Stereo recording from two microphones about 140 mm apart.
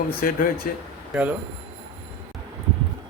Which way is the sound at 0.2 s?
90° left.